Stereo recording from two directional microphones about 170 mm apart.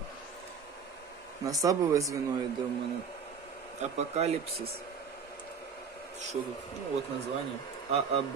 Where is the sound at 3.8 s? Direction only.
40° right (ahead or behind).